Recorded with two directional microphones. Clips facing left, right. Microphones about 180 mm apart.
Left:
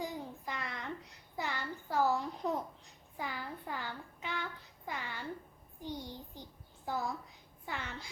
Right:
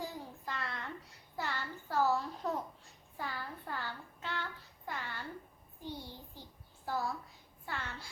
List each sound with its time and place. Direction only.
0.0 s child singing: 15° left (ahead or behind)
4.9 s a sound: 15° left (ahead or behind)
5.8 s child singing: 15° left (ahead or behind)
6.8 s a child's voice: 15° left (ahead or behind)
7.6 s child singing: 15° left (ahead or behind)